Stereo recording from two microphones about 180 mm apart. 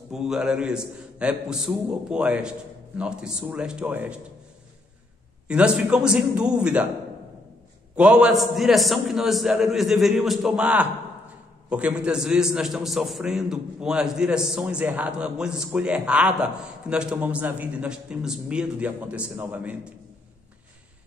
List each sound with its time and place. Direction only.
0.1 s a man's voice: 5° right (ahead or behind)
5.5 s a man's voice: 5° right (ahead or behind)
7.9 s a man's voice: 5° right (ahead or behind)